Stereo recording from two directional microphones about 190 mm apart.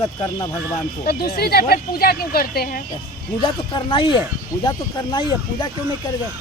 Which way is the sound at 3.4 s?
25° left (ahead or behind).